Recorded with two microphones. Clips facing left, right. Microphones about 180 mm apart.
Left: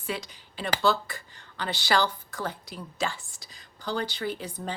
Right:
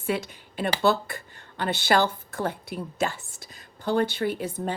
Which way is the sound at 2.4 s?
55° right (ahead or behind).